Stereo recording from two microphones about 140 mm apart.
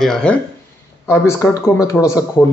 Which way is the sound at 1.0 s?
20° left (ahead or behind).